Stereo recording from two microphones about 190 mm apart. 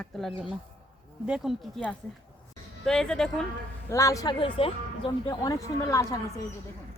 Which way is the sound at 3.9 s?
15° left (ahead or behind).